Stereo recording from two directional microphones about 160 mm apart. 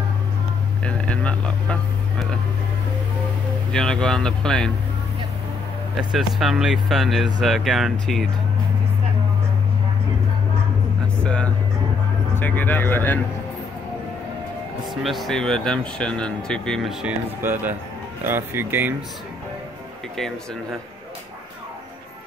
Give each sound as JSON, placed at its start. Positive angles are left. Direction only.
{"t": 0.8, "sound": "vehicle", "side_deg": 5}
{"t": 3.7, "sound": "speech", "side_deg": 5}
{"t": 5.9, "sound": "speech", "side_deg": 0}
{"t": 11.2, "sound": "speech", "side_deg": 5}
{"t": 15.0, "sound": "speech", "side_deg": 0}
{"t": 17.0, "sound": "speech", "side_deg": -10}